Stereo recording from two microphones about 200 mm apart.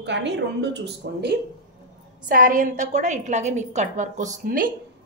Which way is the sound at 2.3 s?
45° right (ahead or behind).